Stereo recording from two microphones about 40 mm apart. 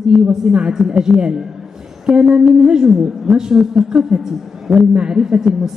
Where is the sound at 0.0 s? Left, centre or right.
Centre.